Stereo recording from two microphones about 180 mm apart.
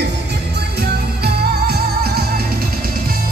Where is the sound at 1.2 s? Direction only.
60° right (ahead or behind).